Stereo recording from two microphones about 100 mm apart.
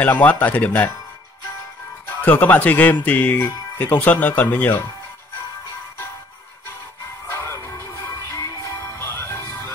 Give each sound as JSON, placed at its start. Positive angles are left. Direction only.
{"t": 0.0, "sound": "speech", "side_deg": 15}
{"t": 2.0, "sound": "speech", "side_deg": 15}
{"t": 7.2, "sound": "music", "side_deg": 30}